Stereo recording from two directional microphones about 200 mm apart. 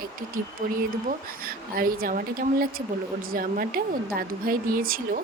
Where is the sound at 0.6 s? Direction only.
40° right (ahead or behind).